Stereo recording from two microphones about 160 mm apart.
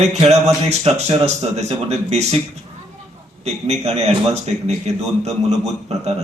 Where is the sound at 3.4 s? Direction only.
40° right (ahead or behind).